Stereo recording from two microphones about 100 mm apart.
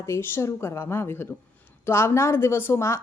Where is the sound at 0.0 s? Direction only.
25° left (ahead or behind).